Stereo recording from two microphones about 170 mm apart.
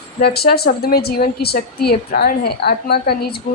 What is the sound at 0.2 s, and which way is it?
A woman's voice, 65° left (ahead or behind).